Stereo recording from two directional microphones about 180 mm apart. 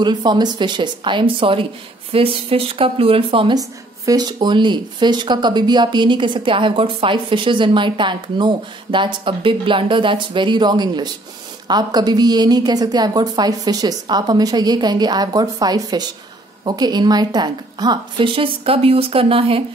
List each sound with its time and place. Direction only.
0.0 s speech: 25° right (ahead or behind)